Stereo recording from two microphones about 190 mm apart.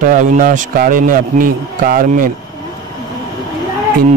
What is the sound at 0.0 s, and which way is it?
A man's voice, 45° right (ahead or behind).